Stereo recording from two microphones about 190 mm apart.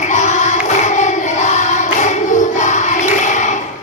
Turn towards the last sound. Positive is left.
turn(degrees=40)  # may be behind; listen again after turning